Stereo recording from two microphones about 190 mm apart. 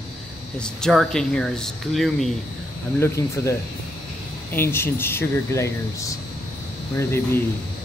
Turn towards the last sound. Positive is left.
turn(degrees=15)  # may be behind; listen again after turning